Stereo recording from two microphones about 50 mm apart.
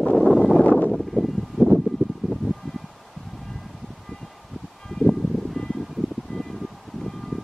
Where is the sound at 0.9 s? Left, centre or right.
Centre.